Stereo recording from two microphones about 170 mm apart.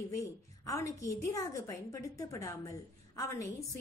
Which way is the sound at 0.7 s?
20° left (ahead or behind).